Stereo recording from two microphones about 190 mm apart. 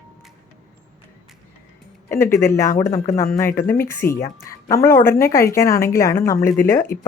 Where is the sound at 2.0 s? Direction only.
15° left (ahead or behind).